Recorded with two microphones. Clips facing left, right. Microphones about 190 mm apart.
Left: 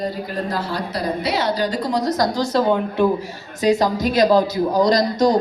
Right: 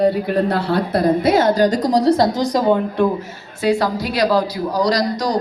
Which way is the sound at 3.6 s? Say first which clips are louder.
Left 1 dB; 20° left (ahead or behind).